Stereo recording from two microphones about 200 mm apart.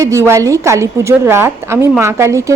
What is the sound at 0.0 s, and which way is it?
A woman's voice, 15° right (ahead or behind).